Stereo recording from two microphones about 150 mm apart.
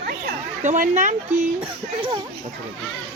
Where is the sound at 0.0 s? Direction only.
90° right.